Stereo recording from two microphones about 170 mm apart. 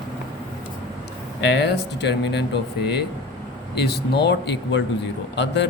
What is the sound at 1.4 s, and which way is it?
Speech, 85° left.